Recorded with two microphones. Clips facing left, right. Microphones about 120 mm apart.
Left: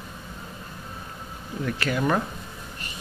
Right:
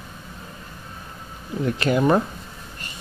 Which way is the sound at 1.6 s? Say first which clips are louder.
Right 6 dB; 30° right (ahead or behind).